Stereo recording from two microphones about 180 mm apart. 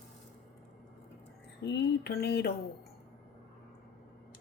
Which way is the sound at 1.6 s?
65° left (ahead or behind).